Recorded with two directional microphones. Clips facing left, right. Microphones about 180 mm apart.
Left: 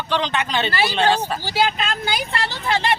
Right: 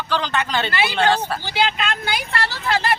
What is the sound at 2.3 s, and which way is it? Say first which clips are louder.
Speech: right 3 dB; 20° left (ahead or behind).